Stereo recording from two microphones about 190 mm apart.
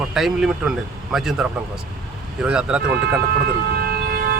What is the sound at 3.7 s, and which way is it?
Vehicle, 55° right (ahead or behind).